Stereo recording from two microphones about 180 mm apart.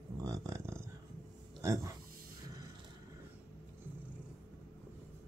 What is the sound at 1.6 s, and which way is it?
Speech, 15° right (ahead or behind).